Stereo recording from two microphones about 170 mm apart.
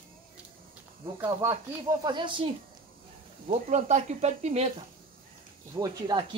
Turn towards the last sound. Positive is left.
turn(degrees=-20)  # may be behind; listen again after turning